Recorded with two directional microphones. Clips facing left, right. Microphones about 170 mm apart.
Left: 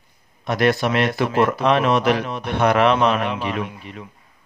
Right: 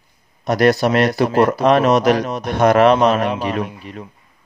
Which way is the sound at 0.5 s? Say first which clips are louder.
Right 4 dB; 40° right (ahead or behind).